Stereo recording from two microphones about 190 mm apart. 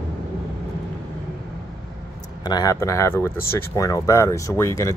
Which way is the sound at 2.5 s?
20° left (ahead or behind).